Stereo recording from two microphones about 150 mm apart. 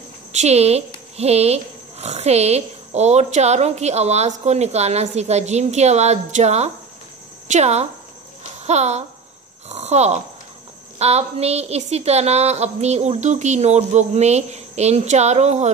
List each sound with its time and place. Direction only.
0.3 s speech: 45° right (ahead or behind)